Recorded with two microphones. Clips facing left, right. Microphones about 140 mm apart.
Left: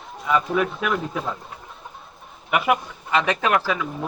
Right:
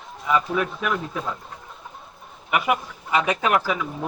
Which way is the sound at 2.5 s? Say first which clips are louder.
Left 2 dB; centre (ahead or behind).